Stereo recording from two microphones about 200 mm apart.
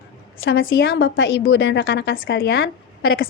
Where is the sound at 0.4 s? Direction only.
80° left.